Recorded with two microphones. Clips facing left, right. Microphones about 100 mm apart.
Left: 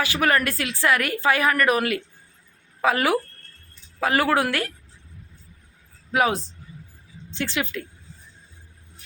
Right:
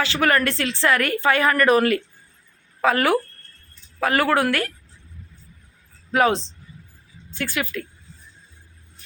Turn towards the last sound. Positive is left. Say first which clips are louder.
# even
turn(degrees=20)  # may be behind; listen again after turning